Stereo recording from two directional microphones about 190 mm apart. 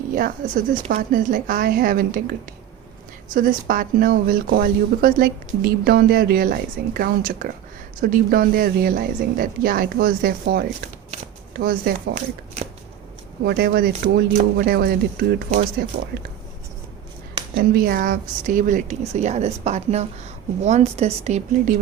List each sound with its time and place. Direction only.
0.1 s speech: 45° right (ahead or behind)
3.3 s speech: 50° right (ahead or behind)
13.4 s speech: 55° right (ahead or behind)
17.6 s speech: 50° right (ahead or behind)